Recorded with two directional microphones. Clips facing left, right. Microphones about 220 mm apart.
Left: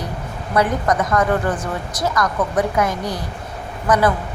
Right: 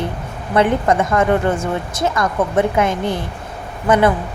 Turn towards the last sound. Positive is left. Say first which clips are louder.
# right 3 dB
turn(degrees=-25)  # may be behind; listen again after turning